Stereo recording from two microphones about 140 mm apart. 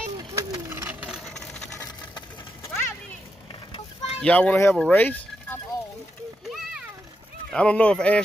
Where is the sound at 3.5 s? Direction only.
40° left (ahead or behind).